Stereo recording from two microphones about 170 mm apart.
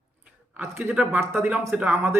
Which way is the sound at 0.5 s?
10° right (ahead or behind).